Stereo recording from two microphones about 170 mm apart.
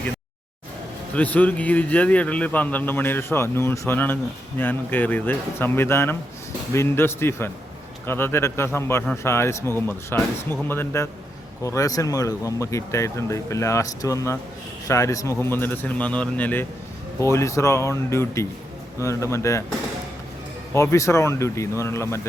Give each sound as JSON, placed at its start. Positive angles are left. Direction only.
{"t": 1.1, "sound": "speech", "side_deg": 10}
{"t": 20.7, "sound": "speech", "side_deg": 15}